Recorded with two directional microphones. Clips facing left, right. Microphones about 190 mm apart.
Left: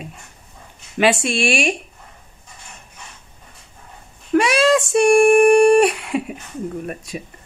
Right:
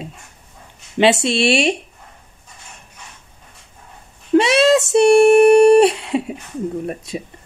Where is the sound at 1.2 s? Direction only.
25° right (ahead or behind).